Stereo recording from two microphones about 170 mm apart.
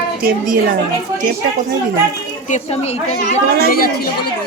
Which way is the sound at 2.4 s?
40° left (ahead or behind).